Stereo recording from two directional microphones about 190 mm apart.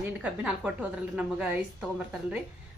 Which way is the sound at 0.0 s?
10° right (ahead or behind).